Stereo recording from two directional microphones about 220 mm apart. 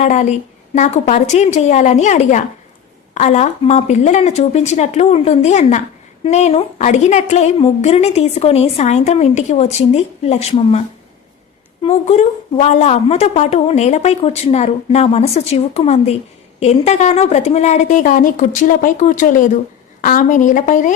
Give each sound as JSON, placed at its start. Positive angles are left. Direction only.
{"t": 0.0, "sound": "a woman's voice", "side_deg": 35}